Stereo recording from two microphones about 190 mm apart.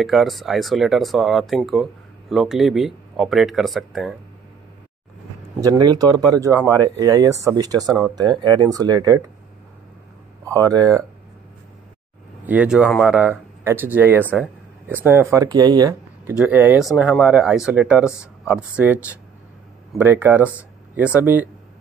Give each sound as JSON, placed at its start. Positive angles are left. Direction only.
{"t": 0.0, "sound": "speech", "side_deg": 0}
{"t": 5.6, "sound": "speech", "side_deg": -20}
{"t": 10.4, "sound": "speech", "side_deg": -20}
{"t": 12.4, "sound": "speech", "side_deg": -5}
{"t": 16.3, "sound": "speech", "side_deg": -5}